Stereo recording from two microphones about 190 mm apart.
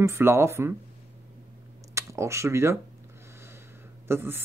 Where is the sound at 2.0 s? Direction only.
15° right (ahead or behind).